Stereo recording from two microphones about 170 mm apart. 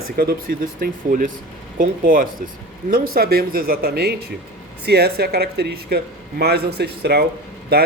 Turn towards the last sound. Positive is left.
turn(degrees=-70)  # may be behind; listen again after turning